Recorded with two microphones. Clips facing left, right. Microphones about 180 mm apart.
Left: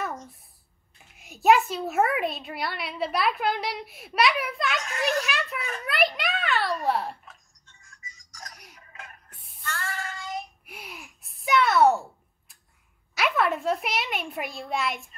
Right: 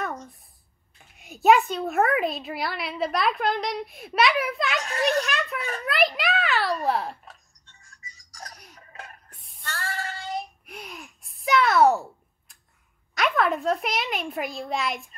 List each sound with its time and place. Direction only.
0.9 s a child's voice: centre (ahead or behind)
4.8 s a child's voice: 35° right (ahead or behind)
5.2 s a child's voice: 5° left (ahead or behind)
7.8 s music: 35° right (ahead or behind)
9.7 s female singing: 35° right (ahead or behind)
10.7 s a sound: 5° left (ahead or behind)
13.1 s a child's voice: 5° left (ahead or behind)